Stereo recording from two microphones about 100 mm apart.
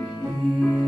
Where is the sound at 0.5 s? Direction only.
5° left (ahead or behind).